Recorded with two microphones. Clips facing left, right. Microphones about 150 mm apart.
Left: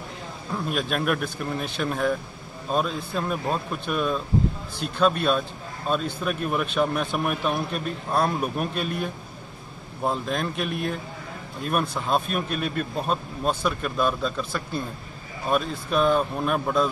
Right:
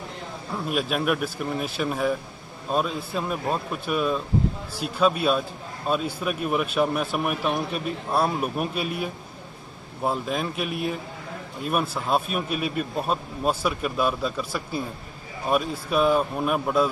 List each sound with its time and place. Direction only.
0.7 s a man's voice: 5° right (ahead or behind)